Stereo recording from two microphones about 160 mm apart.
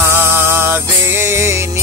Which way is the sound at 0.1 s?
15° right (ahead or behind).